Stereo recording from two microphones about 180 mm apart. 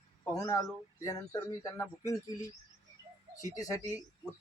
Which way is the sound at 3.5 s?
20° left (ahead or behind).